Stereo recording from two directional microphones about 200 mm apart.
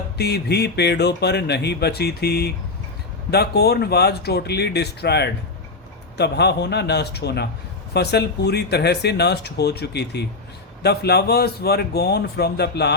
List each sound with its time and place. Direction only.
0.2 s speech: 55° left (ahead or behind)